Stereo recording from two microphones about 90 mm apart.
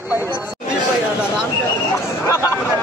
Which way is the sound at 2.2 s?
35° left (ahead or behind).